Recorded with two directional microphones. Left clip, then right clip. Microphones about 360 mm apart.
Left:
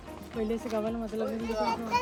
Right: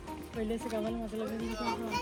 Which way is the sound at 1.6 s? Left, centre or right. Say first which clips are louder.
Left 7 dB; left.